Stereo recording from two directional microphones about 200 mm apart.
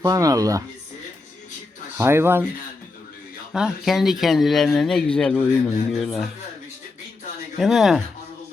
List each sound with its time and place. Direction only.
0.0 s speech: 15° right (ahead or behind)
2.0 s speech: 10° right (ahead or behind)
3.5 s speech: centre (ahead or behind)
7.6 s speech: centre (ahead or behind)